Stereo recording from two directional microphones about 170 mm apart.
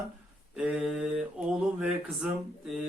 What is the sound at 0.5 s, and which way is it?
Speech, 5° right (ahead or behind).